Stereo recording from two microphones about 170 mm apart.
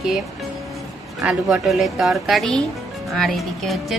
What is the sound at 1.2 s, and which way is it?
A woman's voice, centre (ahead or behind).